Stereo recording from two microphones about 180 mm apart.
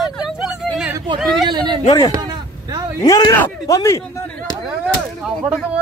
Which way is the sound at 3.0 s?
20° left (ahead or behind).